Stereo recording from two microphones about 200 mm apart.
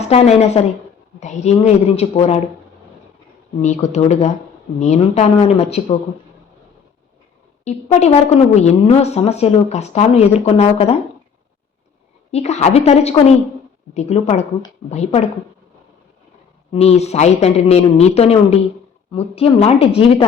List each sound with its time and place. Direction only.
0.0 s a woman's voice: 35° left (ahead or behind)
3.6 s a woman's voice: 35° left (ahead or behind)
7.6 s a woman's voice: 35° left (ahead or behind)
12.3 s a woman's voice: 35° left (ahead or behind)
16.7 s a woman's voice: 30° left (ahead or behind)